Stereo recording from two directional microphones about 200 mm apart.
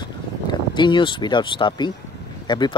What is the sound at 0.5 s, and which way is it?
Speech, 25° left (ahead or behind).